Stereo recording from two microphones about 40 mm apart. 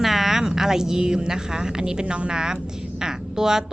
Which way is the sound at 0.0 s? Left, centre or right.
Centre.